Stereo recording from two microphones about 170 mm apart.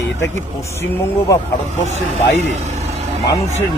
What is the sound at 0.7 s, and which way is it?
Speech, 15° left (ahead or behind).